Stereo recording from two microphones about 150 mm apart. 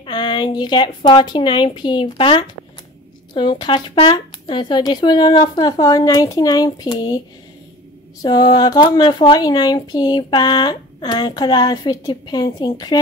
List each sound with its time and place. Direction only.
0.0 s a woman's voice: 30° left (ahead or behind)
8.2 s speech: 25° left (ahead or behind)